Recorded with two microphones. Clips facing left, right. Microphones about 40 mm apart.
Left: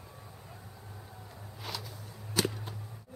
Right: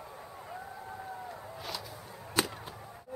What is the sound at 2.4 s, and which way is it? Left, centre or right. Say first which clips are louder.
Whip: even; right.